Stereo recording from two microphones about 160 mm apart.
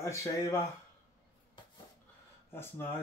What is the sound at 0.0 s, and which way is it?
Speech, 20° left (ahead or behind).